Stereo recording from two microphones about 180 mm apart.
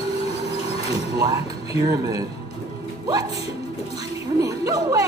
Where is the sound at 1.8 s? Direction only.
20° right (ahead or behind).